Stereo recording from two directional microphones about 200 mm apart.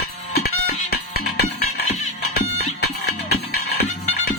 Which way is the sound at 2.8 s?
55° left (ahead or behind).